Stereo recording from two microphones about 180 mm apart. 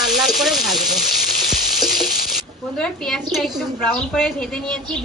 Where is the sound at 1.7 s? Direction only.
Centre (ahead or behind).